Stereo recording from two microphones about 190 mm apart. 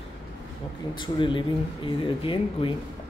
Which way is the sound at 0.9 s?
25° left (ahead or behind).